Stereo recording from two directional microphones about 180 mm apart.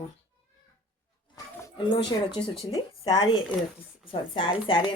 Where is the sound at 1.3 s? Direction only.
20° left (ahead or behind).